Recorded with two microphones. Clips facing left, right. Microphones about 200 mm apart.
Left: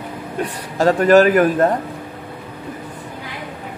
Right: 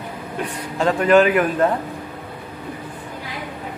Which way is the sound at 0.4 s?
40° left (ahead or behind).